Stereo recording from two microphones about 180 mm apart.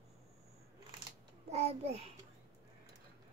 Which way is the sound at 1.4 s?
35° right (ahead or behind).